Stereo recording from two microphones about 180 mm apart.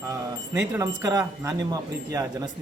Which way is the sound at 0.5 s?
15° right (ahead or behind).